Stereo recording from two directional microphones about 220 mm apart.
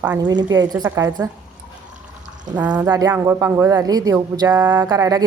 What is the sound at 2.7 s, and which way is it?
Speech, 15° right (ahead or behind).